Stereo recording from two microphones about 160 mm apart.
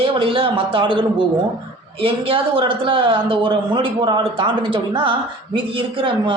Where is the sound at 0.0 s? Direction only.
35° right (ahead or behind).